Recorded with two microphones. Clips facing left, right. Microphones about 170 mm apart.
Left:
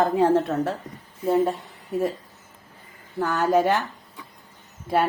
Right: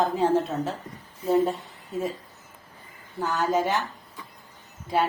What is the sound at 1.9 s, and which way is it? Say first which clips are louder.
Speech: left 5 dB; 60° left (ahead or behind).